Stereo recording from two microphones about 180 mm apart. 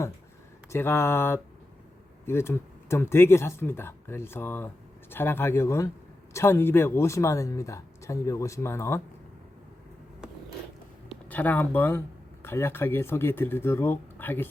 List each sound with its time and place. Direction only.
0.7 s speech: 15° left (ahead or behind)
11.1 s speech: 10° left (ahead or behind)